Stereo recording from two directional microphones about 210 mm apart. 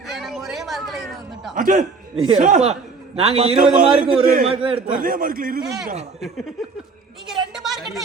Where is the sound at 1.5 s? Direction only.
40° right (ahead or behind).